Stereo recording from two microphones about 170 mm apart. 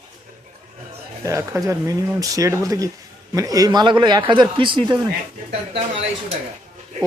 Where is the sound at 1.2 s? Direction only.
20° right (ahead or behind).